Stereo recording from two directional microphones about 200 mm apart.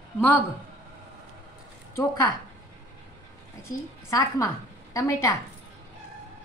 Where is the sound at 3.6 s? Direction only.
15° left (ahead or behind).